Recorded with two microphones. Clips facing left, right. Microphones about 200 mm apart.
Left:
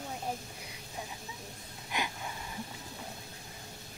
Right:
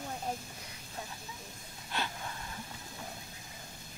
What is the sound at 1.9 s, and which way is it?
Wheeze, 15° left (ahead or behind).